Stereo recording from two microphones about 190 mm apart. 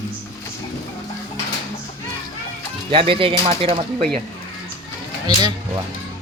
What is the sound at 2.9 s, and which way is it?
Speech, 30° right (ahead or behind).